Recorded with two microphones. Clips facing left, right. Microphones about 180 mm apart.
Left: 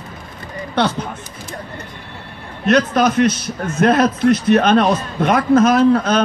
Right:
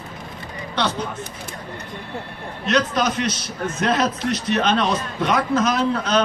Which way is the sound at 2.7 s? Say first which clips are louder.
Left 6 dB; 55° left (ahead or behind).